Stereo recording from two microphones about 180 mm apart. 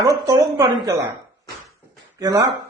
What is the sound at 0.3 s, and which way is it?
Speech, 20° right (ahead or behind).